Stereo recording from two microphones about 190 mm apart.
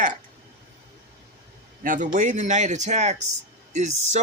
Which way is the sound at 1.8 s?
45° right (ahead or behind).